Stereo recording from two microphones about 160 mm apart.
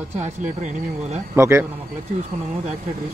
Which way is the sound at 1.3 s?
15° right (ahead or behind).